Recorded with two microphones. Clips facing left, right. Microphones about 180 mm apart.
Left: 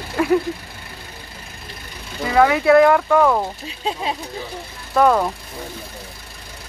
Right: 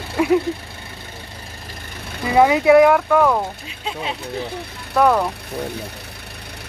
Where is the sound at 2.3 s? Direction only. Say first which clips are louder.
Right 1 dB; 15° right (ahead or behind); by 3.4 s centre (ahead or behind).